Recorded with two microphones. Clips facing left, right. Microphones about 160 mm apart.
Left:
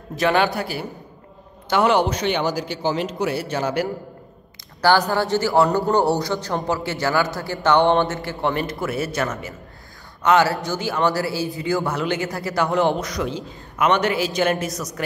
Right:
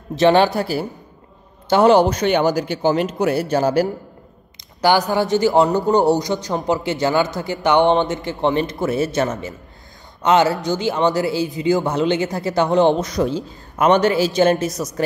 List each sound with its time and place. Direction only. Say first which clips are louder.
0.1 s a man's voice: right 5 dB; 30° right (ahead or behind)
4.8 s a man's voice: right 2 dB; 15° right (ahead or behind)
13.2 s a woman's voice: right 6 dB; 35° right (ahead or behind)